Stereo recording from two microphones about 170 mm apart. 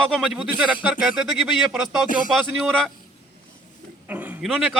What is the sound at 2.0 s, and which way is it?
Speech, 55° left (ahead or behind).